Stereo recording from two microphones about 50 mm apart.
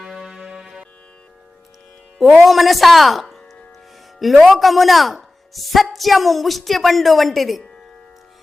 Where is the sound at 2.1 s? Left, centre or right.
Centre.